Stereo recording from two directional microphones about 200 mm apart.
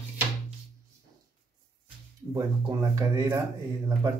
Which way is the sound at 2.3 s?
20° right (ahead or behind).